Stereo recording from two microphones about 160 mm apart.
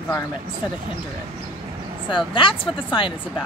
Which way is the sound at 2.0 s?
30° left (ahead or behind).